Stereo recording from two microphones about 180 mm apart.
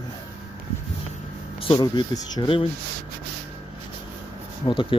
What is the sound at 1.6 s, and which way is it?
Speech, 25° left (ahead or behind).